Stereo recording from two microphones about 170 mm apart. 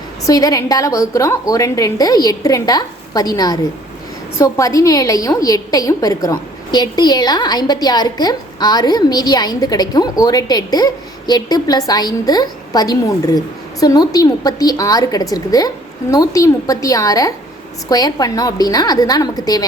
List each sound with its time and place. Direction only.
0.3 s a woman's voice: 20° left (ahead or behind)